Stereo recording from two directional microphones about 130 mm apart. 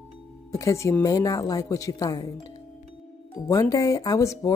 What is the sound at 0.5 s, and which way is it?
Speech, 25° left (ahead or behind).